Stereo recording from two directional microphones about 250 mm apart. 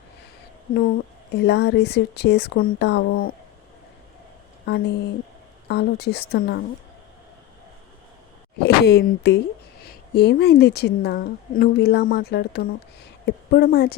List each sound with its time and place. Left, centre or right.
1.3 s a woman's voice: left
4.6 s a woman's voice: left
8.5 s a woman's voice: left